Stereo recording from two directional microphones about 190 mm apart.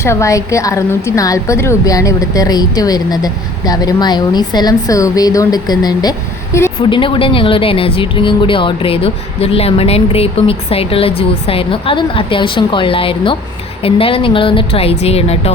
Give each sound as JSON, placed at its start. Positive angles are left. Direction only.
{"t": 0.0, "sound": "a woman's voice", "side_deg": 15}